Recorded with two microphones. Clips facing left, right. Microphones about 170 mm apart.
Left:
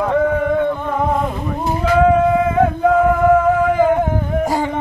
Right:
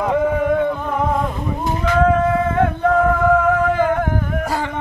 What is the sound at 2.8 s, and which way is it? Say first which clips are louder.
Male singing: left 2 dB; 10° left (ahead or behind).